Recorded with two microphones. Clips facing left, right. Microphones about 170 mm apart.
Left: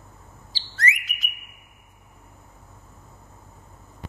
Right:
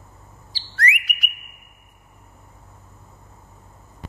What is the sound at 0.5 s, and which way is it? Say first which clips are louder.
Bird: right 2 dB; 25° left (ahead or behind).